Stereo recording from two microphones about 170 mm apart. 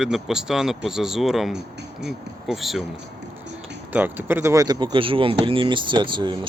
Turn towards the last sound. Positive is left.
turn(degrees=-30)  # may be behind; listen again after turning